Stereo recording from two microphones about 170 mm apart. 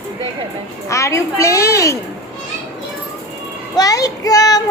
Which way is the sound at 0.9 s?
20° left (ahead or behind).